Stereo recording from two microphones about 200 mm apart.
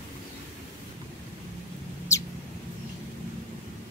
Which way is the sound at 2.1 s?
15° left (ahead or behind).